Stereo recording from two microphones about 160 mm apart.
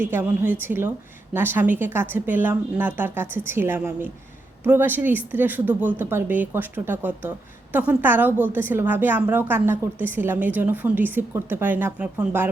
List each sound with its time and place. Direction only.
0.0 s a woman's voice: 15° right (ahead or behind)